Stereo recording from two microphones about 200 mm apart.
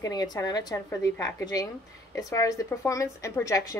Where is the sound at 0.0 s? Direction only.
20° left (ahead or behind).